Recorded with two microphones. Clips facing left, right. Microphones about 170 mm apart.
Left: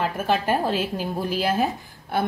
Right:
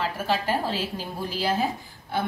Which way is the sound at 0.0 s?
55° left (ahead or behind).